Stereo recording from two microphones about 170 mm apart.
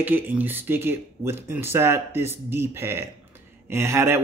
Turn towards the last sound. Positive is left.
turn(degrees=-15)  # may be behind; listen again after turning